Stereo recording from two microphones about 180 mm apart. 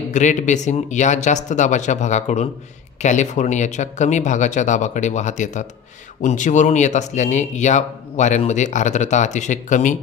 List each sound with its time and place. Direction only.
0.1 s speech: 40° left (ahead or behind)